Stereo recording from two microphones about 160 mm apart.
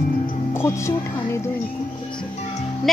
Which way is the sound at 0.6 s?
15° left (ahead or behind).